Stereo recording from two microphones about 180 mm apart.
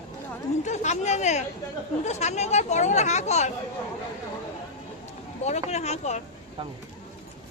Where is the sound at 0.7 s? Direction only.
40° left (ahead or behind).